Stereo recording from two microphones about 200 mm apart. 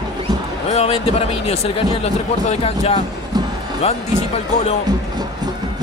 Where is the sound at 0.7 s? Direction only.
30° left (ahead or behind).